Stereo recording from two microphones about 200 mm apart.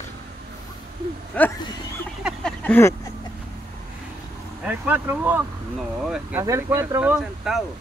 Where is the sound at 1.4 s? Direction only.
5° left (ahead or behind).